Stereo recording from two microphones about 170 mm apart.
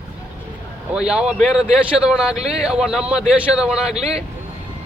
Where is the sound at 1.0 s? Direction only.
5° right (ahead or behind).